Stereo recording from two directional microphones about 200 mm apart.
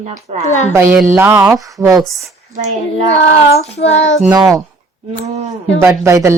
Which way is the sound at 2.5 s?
35° right (ahead or behind).